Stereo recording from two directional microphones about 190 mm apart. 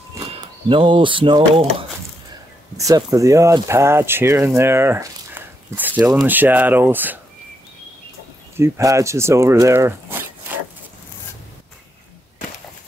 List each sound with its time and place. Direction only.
0.7 s speech: 25° right (ahead or behind)
2.8 s speech: 15° right (ahead or behind)
8.5 s speech: 15° right (ahead or behind)